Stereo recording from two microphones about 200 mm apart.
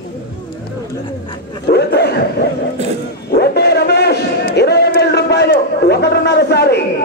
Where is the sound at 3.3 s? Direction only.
55° left (ahead or behind).